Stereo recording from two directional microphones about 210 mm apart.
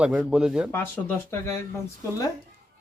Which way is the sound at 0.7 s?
10° left (ahead or behind).